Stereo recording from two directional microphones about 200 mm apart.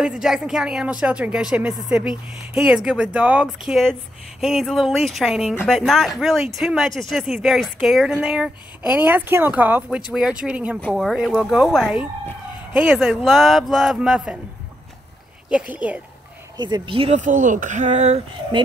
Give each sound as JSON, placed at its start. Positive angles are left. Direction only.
{"t": 0.0, "sound": "speech", "side_deg": -5}
{"t": 15.5, "sound": "speech", "side_deg": -5}
{"t": 16.5, "sound": "speech", "side_deg": -20}